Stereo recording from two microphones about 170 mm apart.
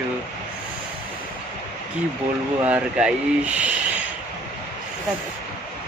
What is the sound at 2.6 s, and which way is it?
Speech, 5° right (ahead or behind).